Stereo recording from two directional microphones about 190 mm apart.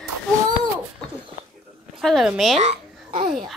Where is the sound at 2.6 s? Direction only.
30° right (ahead or behind).